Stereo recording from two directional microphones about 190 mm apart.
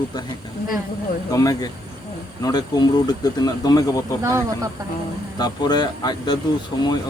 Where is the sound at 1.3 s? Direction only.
20° left (ahead or behind).